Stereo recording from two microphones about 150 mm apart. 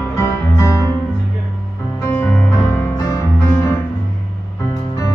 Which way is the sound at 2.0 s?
15° left (ahead or behind).